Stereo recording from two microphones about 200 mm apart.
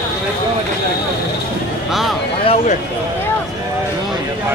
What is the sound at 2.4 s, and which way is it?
Speech, 30° left (ahead or behind).